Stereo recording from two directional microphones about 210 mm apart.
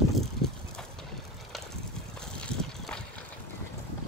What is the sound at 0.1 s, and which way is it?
Vehicle, centre (ahead or behind).